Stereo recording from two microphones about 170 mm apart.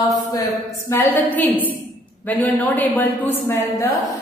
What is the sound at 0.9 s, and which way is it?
Speech, 15° left (ahead or behind).